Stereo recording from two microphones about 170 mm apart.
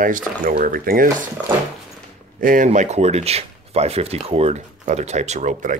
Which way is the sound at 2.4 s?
55° right (ahead or behind).